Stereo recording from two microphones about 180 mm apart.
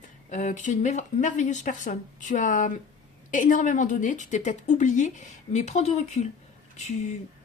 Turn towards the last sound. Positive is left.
turn(degrees=40)  # may be behind; listen again after turning